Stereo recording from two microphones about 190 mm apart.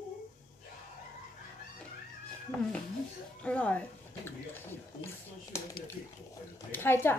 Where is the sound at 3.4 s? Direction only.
10° left (ahead or behind).